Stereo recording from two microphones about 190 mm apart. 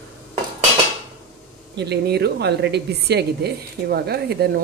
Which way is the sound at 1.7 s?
60° right (ahead or behind).